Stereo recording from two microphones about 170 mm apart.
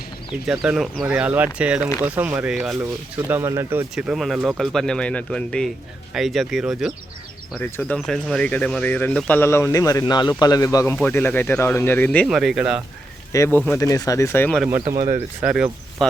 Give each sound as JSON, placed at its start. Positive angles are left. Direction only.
{"t": 0.4, "sound": "speech", "side_deg": -5}
{"t": 3.9, "sound": "speech", "side_deg": 0}
{"t": 7.6, "sound": "speech", "side_deg": 10}
{"t": 13.3, "sound": "speech", "side_deg": 15}
{"t": 14.8, "sound": "speech", "side_deg": -20}
{"t": 15.4, "sound": "speech", "side_deg": -5}